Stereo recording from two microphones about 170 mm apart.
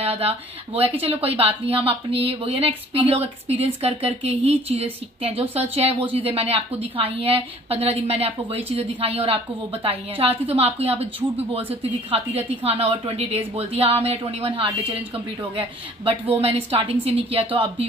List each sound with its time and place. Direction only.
0.0 s speech: 35° right (ahead or behind)